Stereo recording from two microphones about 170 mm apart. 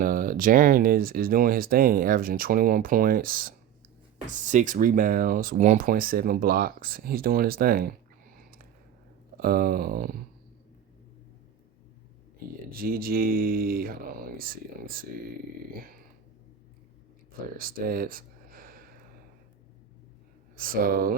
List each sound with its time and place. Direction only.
0.0 s speech: 50° right (ahead or behind)
9.4 s speech: 60° right (ahead or behind)
12.7 s speech: 60° right (ahead or behind)
17.6 s speech: 55° right (ahead or behind)
20.6 s speech: 60° right (ahead or behind)